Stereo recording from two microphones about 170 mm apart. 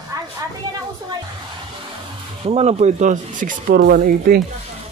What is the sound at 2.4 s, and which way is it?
Speech, 40° right (ahead or behind).